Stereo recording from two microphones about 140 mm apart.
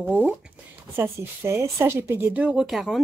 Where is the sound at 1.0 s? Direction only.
20° right (ahead or behind).